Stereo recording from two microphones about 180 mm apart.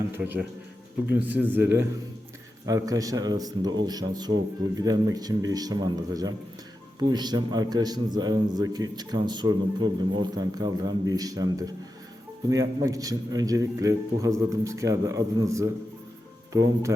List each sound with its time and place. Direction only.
0.2 s a man's voice: 5° right (ahead or behind)